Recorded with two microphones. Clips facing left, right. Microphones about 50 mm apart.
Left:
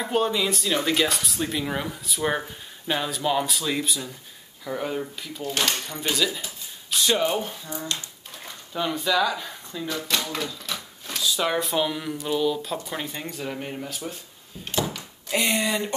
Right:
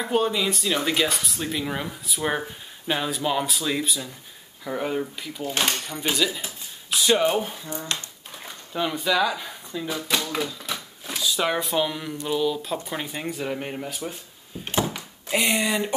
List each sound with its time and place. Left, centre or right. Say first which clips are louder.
0.0 s speech: right 1 dB; centre
8.7 s speech: even; centre
10.3 s a sound: right 2 dB; centre
11.5 s speech: even; centre
14.6 s a sound: right 2 dB; right
15.3 s speech: right 1 dB; centre